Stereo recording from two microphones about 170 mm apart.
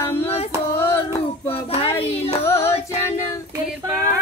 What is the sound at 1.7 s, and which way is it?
Child singing, 35° left (ahead or behind).